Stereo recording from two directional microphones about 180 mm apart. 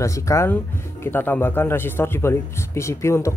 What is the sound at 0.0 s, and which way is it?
Speech, 15° left (ahead or behind).